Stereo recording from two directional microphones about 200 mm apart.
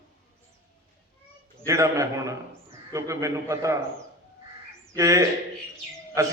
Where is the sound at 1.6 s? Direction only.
15° right (ahead or behind).